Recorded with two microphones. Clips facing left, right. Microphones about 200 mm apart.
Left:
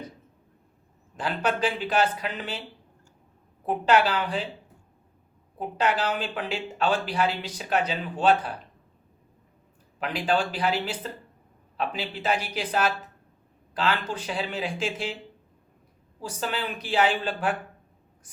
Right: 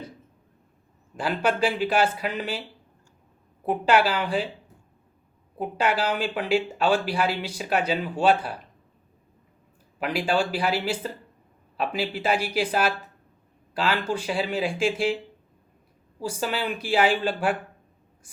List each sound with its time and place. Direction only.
1.1 s speech: 10° right (ahead or behind)
3.7 s speech: 10° right (ahead or behind)
5.5 s speech: 10° right (ahead or behind)
10.0 s speech: 10° right (ahead or behind)
16.2 s speech: 10° right (ahead or behind)